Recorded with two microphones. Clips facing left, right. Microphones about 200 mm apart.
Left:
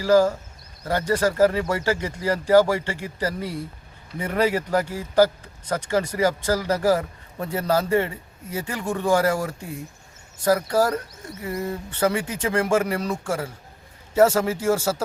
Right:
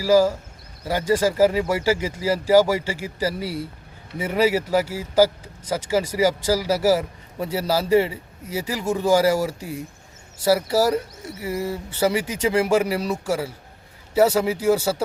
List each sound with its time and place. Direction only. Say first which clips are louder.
0.0 s speech: right 1 dB; 10° right (ahead or behind)